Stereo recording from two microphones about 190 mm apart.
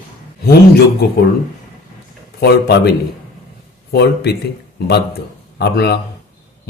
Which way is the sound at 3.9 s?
60° left (ahead or behind).